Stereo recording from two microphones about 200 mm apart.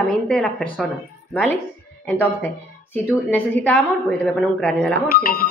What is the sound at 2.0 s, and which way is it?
A woman's voice, 10° left (ahead or behind).